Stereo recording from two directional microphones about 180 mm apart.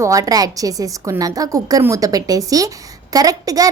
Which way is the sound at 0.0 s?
20° right (ahead or behind).